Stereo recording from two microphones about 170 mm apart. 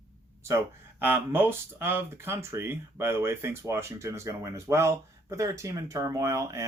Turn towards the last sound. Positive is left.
turn(degrees=-20)  # may be behind; listen again after turning